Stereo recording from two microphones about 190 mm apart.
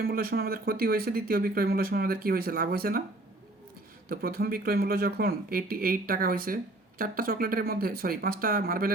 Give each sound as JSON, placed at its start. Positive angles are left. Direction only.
{"t": 0.0, "sound": "speech", "side_deg": -55}
{"t": 4.1, "sound": "speech", "side_deg": -55}